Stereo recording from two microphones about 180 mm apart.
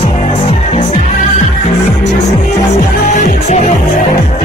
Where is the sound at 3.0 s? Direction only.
45° left (ahead or behind).